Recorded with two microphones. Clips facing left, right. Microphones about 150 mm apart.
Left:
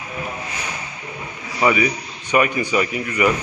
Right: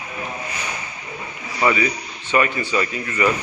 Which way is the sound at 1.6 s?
10° left (ahead or behind).